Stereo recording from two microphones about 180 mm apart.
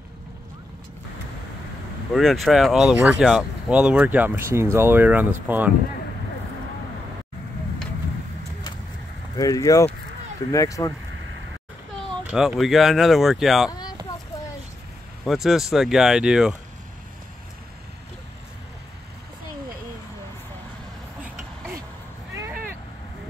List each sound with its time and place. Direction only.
2.1 s speech: centre (ahead or behind)
9.4 s speech: 20° left (ahead or behind)
12.3 s speech: 5° right (ahead or behind)
13.7 s a sound: 20° left (ahead or behind)
15.2 s speech: centre (ahead or behind)
22.3 s a sound: 15° right (ahead or behind)